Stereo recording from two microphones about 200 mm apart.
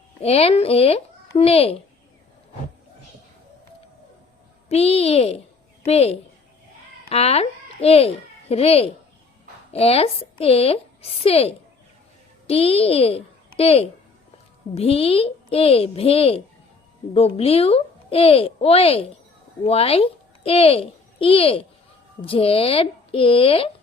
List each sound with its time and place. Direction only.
0.2 s speech: 30° left (ahead or behind)
4.7 s a child's voice: 30° left (ahead or behind)